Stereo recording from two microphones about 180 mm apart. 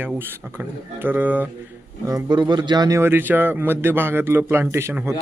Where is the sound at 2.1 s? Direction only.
20° right (ahead or behind).